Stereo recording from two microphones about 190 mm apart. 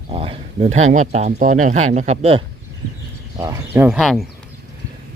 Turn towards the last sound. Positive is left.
turn(degrees=0)  # may be behind; listen again after turning